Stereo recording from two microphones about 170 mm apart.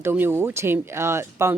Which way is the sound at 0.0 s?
15° right (ahead or behind).